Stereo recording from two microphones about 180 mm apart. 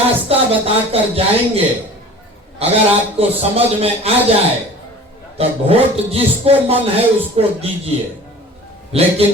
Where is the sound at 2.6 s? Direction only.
35° right (ahead or behind).